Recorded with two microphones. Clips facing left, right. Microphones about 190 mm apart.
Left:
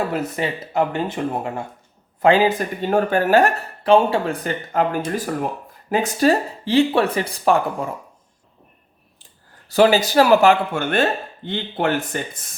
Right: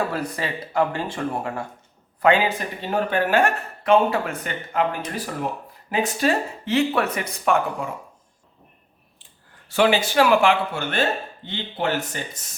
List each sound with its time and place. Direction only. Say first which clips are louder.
0.1 s speech: left 4 dB; 20° left (ahead or behind)
2.2 s speech: left 4 dB; 35° left (ahead or behind)
9.6 s speech: left 4 dB; 40° left (ahead or behind); by 12.4 s 55° left (ahead or behind)